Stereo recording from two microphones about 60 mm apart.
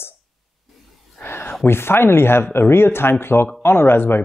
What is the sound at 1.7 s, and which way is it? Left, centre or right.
Speech, left.